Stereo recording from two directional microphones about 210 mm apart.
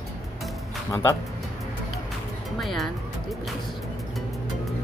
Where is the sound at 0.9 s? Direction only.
15° left (ahead or behind).